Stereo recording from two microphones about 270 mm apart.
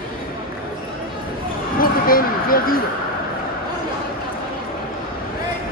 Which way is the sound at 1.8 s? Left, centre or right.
Left.